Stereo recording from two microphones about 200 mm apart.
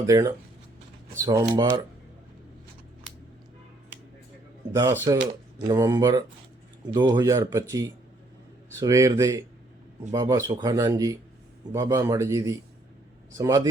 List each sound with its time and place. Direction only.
0.0 s speech: 15° right (ahead or behind)
4.7 s speech: 15° right (ahead or behind)